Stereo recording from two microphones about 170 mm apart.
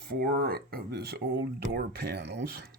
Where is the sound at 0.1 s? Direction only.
60° right (ahead or behind).